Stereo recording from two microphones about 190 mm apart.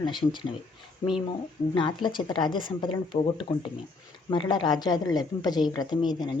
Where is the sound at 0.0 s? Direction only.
25° left (ahead or behind).